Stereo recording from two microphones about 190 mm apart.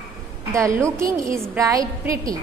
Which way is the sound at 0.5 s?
15° right (ahead or behind).